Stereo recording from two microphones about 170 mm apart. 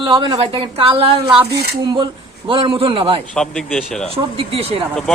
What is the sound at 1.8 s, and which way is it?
A man's voice, 25° right (ahead or behind).